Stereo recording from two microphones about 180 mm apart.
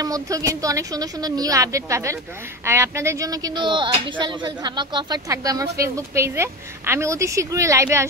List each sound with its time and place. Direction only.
0.0 s a woman's voice: 20° right (ahead or behind)